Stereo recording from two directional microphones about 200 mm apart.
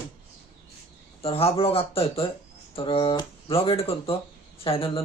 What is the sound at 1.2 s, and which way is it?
Speech, 30° left (ahead or behind).